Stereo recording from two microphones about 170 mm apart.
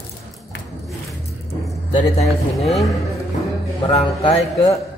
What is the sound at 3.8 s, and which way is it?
Speech, 35° left (ahead or behind).